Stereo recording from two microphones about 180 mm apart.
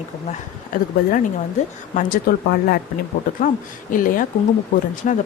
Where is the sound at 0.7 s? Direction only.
45° left (ahead or behind).